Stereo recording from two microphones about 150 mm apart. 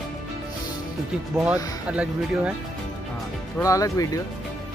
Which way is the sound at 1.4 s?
10° right (ahead or behind).